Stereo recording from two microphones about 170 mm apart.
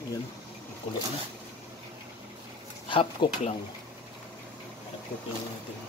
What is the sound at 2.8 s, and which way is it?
Speech, 30° left (ahead or behind).